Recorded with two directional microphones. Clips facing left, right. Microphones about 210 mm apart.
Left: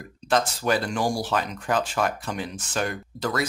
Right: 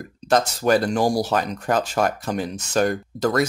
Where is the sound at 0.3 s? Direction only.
40° right (ahead or behind).